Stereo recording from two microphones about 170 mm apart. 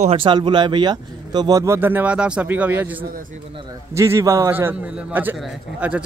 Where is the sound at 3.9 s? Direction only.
15° right (ahead or behind).